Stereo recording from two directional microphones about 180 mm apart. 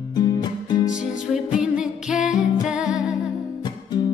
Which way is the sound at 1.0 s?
5° right (ahead or behind).